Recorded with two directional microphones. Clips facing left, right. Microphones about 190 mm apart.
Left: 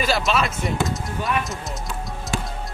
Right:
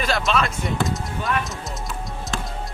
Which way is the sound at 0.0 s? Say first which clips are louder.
Left 1 dB; 5° left (ahead or behind).